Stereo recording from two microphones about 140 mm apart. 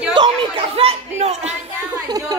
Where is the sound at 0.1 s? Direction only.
35° right (ahead or behind); by 1.5 s 50° right (ahead or behind).